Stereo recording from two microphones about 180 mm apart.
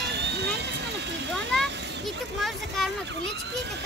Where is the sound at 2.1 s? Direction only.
Centre (ahead or behind).